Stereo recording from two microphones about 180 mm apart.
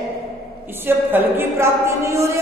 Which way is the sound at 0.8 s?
10° right (ahead or behind).